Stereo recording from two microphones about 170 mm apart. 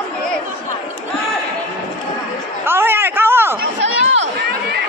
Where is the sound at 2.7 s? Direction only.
15° right (ahead or behind).